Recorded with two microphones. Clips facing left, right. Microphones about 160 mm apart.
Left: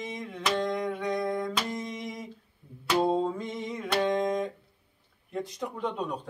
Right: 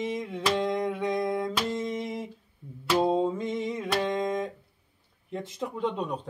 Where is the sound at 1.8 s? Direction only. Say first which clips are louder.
Right 5 dB; 30° right (ahead or behind).